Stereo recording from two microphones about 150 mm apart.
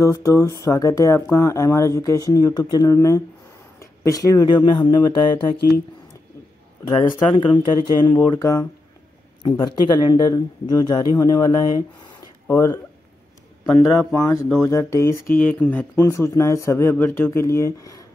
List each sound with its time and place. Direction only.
0.0 s speech: 20° left (ahead or behind)
6.9 s speech: 35° left (ahead or behind)